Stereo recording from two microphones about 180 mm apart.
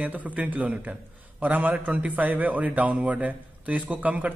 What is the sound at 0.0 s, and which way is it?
A man's voice, 10° right (ahead or behind).